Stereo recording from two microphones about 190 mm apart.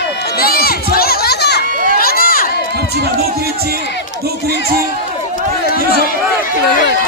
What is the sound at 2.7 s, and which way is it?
A man's voice, 55° right (ahead or behind).